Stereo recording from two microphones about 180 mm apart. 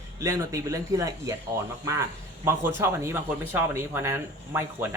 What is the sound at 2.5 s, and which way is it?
Speech, 15° right (ahead or behind).